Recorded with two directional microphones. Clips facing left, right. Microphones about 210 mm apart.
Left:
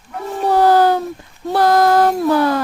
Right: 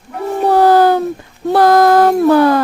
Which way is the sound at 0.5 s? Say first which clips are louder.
Right 3 dB; 60° right (ahead or behind).